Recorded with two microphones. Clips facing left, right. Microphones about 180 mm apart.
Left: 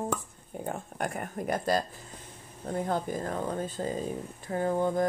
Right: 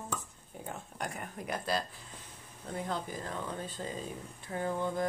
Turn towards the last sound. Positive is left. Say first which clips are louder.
# left 6 dB
turn(degrees=45)  # may be behind; listen again after turning